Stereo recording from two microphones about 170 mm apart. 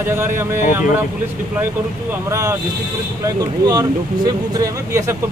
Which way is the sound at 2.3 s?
15° right (ahead or behind).